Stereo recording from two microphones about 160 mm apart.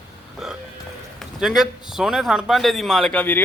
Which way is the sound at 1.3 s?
5° right (ahead or behind).